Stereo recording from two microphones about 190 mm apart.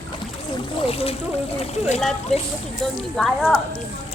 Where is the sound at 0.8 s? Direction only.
30° left (ahead or behind).